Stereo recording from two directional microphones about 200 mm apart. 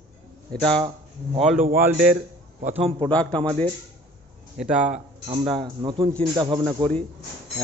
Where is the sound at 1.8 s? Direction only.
5° right (ahead or behind).